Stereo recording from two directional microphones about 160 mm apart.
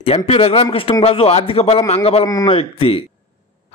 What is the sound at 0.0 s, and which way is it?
A man's voice, 35° left (ahead or behind).